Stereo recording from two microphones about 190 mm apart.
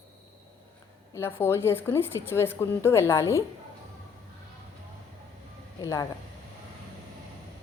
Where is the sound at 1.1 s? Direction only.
15° left (ahead or behind).